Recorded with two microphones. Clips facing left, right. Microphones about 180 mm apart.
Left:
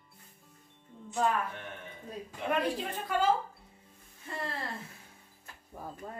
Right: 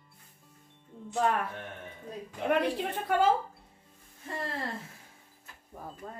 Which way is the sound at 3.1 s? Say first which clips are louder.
Right 4 dB; 60° right (ahead or behind).